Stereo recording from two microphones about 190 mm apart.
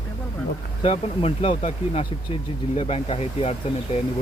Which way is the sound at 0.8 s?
30° left (ahead or behind).